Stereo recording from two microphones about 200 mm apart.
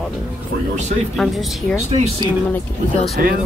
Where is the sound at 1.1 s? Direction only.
Centre (ahead or behind).